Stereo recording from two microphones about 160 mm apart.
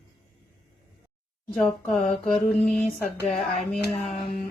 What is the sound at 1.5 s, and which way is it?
Speech, 5° left (ahead or behind).